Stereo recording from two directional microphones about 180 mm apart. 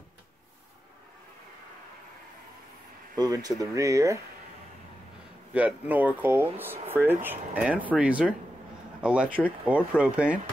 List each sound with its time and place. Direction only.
3.2 s speech: 20° right (ahead or behind)
5.5 s speech: 5° right (ahead or behind)